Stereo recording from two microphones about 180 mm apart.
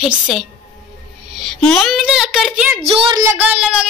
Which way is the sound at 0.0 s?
5° right (ahead or behind).